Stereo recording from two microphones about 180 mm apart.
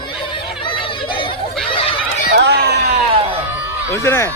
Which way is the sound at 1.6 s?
30° left (ahead or behind).